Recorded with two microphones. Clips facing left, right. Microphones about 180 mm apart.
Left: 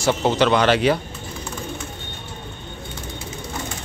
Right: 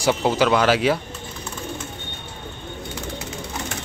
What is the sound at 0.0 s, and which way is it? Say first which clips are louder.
Speech: left 1 dB; 5° right (ahead or behind).